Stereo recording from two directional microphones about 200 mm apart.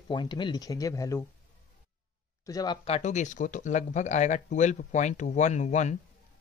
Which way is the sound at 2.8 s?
35° left (ahead or behind).